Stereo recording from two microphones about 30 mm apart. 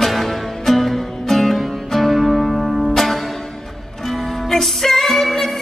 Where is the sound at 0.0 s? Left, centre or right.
Centre.